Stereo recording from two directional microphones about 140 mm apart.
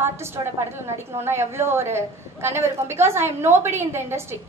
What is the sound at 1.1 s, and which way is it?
A woman's voice, 15° right (ahead or behind).